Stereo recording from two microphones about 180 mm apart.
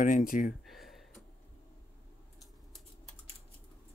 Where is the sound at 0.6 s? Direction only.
Centre (ahead or behind).